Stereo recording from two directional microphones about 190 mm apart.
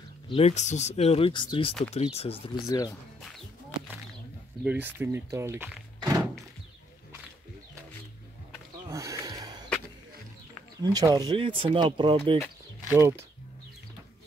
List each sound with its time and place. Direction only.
0.3 s speech: 30° left (ahead or behind)
2.7 s speech: 20° left (ahead or behind)
4.6 s speech: 10° right (ahead or behind)
5.9 s thunk: 20° right (ahead or behind)
8.5 s a sound: 15° right (ahead or behind)
10.8 s speech: 20° right (ahead or behind)
12.8 s speech: 15° right (ahead or behind)